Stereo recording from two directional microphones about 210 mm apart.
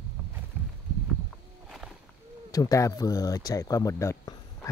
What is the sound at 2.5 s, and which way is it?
Speech, 15° left (ahead or behind).